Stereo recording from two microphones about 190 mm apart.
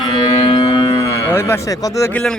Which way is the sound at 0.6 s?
25° left (ahead or behind).